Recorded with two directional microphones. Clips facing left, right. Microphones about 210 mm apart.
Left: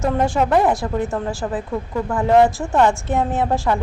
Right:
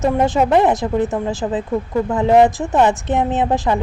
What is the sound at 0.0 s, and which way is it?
A woman's voice, 15° right (ahead or behind).